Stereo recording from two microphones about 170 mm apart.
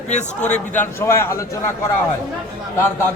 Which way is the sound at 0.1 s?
45° left (ahead or behind).